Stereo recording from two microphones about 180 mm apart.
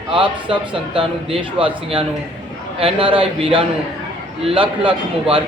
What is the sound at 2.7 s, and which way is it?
Speech, 30° right (ahead or behind).